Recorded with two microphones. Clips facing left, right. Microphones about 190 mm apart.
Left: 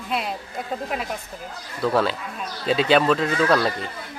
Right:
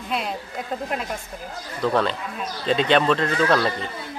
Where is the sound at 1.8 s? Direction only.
5° left (ahead or behind).